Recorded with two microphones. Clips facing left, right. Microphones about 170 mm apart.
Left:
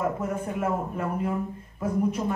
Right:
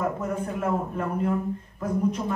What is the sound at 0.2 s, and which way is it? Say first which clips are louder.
Speech: even; 10° left (ahead or behind).